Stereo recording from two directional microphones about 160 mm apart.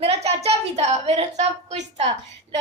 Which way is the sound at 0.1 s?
40° right (ahead or behind).